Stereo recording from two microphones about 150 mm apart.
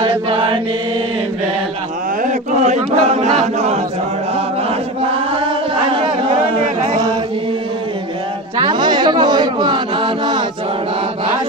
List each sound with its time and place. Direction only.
0.0 s mantra: 35° right (ahead or behind)
2.2 s chant: 55° right (ahead or behind)
8.5 s a sound: 30° right (ahead or behind)